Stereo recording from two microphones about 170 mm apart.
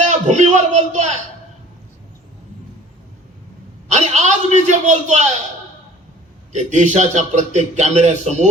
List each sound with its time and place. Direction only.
0.0 s a man's voice: 45° right (ahead or behind)
3.8 s a sound: 45° right (ahead or behind)
6.5 s a man's voice: 45° right (ahead or behind)